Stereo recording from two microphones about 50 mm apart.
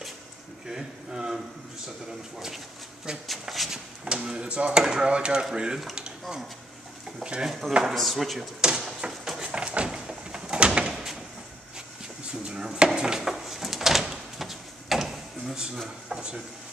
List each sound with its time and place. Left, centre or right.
0.7 s speech: centre
4.0 s speech: centre
7.2 s speech: centre
7.9 s speech: centre
8.5 s a sound: centre
12.3 s drawer open or close: centre
16.1 s speech: centre